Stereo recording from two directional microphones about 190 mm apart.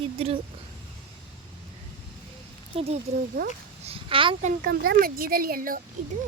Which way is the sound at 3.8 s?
30° right (ahead or behind).